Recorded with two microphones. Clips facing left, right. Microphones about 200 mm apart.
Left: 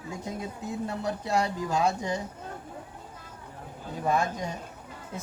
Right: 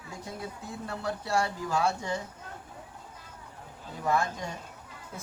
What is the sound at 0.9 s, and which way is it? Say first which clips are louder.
Speech: even; 20° left (ahead or behind).